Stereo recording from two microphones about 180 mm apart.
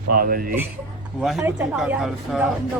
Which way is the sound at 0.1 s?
55° right (ahead or behind).